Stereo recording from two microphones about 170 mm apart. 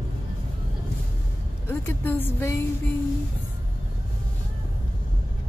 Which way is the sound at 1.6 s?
15° left (ahead or behind).